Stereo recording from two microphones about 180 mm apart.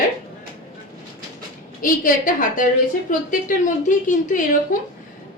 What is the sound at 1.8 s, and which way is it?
A woman's voice, 50° left (ahead or behind).